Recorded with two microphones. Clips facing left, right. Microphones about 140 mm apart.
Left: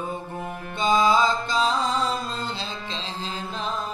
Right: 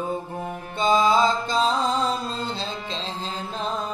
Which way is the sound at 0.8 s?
35° right (ahead or behind).